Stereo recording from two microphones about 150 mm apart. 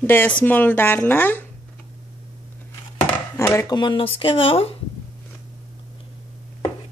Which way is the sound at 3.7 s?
30° left (ahead or behind).